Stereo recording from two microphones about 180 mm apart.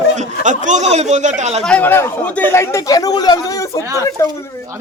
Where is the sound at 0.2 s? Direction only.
45° right (ahead or behind).